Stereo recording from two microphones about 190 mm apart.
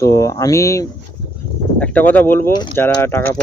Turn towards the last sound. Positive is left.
turn(degrees=10)  # may be behind; listen again after turning